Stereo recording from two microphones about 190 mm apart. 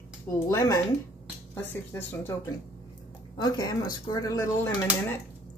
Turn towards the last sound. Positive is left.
turn(degrees=15)  # may be behind; listen again after turning